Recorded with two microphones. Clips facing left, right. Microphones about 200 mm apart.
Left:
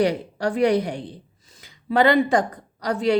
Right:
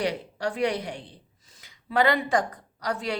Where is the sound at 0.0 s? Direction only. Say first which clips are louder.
Left 7 dB; 40° left (ahead or behind).